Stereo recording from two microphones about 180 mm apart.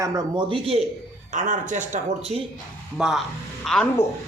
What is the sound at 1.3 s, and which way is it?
Speech, 45° right (ahead or behind).